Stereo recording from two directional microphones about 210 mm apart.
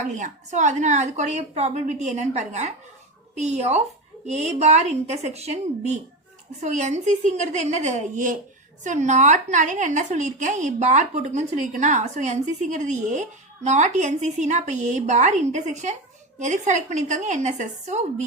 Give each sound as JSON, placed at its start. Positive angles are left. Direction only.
{"t": 0.0, "sound": "a woman's voice", "side_deg": -35}